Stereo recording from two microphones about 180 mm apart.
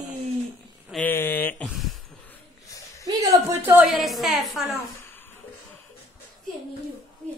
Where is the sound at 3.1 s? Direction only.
20° right (ahead or behind).